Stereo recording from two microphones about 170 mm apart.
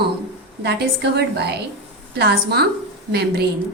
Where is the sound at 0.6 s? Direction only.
75° right (ahead or behind).